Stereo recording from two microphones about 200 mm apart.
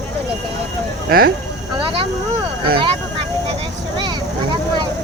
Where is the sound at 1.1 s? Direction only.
50° right (ahead or behind).